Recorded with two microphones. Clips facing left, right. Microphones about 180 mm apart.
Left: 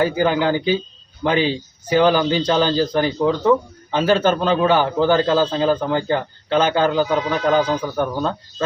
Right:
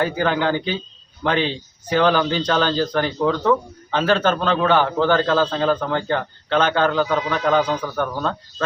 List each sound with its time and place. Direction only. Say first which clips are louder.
0.0 s a man's voice: left 3 dB; 5° left (ahead or behind)